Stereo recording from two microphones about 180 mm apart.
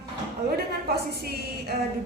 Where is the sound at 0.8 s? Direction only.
60° right (ahead or behind).